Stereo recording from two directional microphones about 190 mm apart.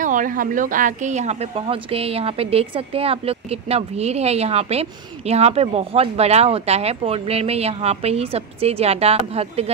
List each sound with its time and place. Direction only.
0.0 s speech: 45° right (ahead or behind)